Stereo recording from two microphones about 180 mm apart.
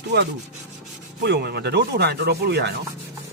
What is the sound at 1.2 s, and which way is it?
Speech, 70° right (ahead or behind).